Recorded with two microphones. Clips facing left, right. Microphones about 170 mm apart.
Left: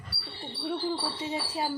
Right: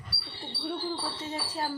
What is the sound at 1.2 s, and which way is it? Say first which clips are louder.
Speech: left 2 dB; 10° left (ahead or behind).